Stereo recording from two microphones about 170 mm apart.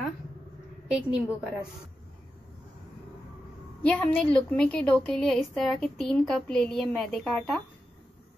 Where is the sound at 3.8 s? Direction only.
5° left (ahead or behind).